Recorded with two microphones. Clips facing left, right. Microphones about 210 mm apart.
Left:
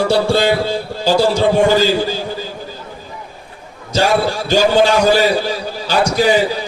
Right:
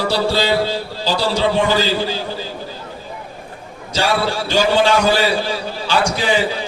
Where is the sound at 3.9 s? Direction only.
45° left (ahead or behind).